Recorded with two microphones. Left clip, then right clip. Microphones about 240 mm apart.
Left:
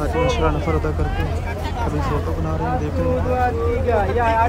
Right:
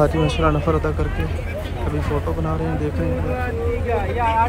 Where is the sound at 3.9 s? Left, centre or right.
Left.